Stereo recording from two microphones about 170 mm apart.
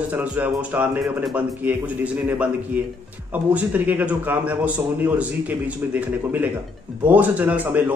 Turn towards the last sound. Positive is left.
turn(degrees=-10)  # may be behind; listen again after turning